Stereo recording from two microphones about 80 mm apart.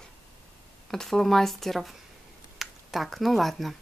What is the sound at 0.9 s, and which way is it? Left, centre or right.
Speech, centre.